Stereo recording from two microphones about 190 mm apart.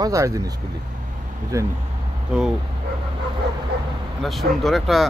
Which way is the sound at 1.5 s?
15° right (ahead or behind).